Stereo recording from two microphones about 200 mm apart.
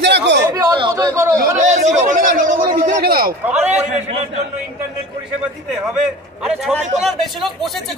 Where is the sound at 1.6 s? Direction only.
35° right (ahead or behind).